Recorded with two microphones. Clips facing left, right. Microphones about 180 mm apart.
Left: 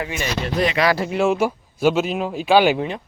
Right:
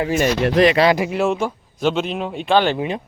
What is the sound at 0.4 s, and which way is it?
Speech, 75° right (ahead or behind).